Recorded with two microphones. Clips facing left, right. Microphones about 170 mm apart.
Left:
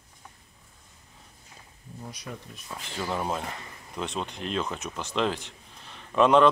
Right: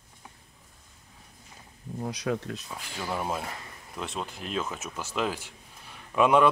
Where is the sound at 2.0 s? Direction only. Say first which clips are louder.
Right 10 dB; 85° right.